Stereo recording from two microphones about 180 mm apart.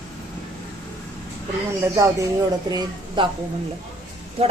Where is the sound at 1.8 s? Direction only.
15° right (ahead or behind).